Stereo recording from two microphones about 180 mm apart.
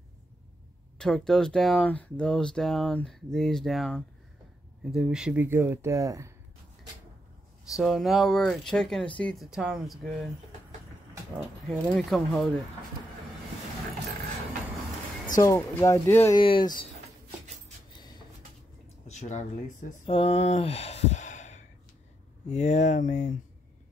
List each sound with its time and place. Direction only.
0.9 s speech: 5° left (ahead or behind); by 6.3 s 15° right (ahead or behind)
7.7 s speech: centre (ahead or behind)
11.3 s speech: centre (ahead or behind)
15.3 s speech: 15° left (ahead or behind)
16.3 s speech: 25° left (ahead or behind)
19.0 s speech: 40° left (ahead or behind)